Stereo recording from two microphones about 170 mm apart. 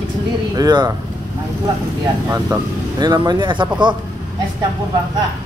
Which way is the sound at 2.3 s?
20° right (ahead or behind).